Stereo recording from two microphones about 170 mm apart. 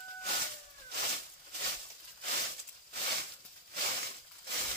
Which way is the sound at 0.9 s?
75° right (ahead or behind).